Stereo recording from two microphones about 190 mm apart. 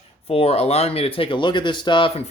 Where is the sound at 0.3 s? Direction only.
30° left (ahead or behind).